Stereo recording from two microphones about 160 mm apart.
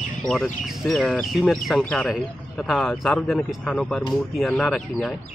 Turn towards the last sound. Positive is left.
turn(degrees=5)  # may be behind; listen again after turning